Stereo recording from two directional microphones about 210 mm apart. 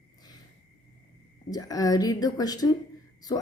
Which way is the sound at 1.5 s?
20° left (ahead or behind).